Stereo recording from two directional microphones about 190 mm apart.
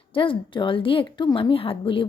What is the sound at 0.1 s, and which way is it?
Speech, 25° left (ahead or behind).